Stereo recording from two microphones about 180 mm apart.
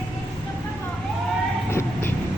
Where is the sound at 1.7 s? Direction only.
10° left (ahead or behind).